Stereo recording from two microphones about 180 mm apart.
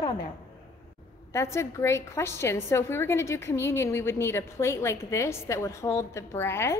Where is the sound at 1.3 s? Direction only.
15° left (ahead or behind).